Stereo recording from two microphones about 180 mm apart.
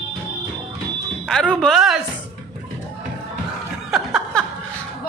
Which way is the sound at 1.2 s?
5° left (ahead or behind).